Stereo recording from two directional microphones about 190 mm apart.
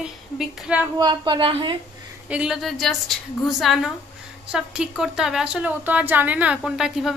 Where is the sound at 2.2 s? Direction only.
5° right (ahead or behind).